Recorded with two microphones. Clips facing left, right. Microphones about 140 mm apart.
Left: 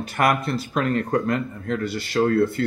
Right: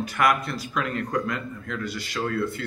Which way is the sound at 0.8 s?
45° left (ahead or behind).